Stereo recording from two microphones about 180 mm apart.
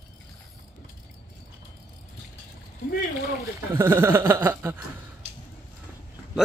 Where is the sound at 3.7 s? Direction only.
10° right (ahead or behind).